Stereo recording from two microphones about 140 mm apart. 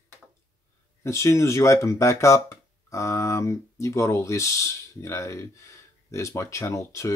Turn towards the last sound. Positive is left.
turn(degrees=20)  # may be behind; listen again after turning